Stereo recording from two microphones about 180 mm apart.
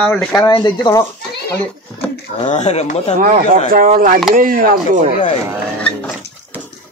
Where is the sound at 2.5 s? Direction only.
40° left (ahead or behind).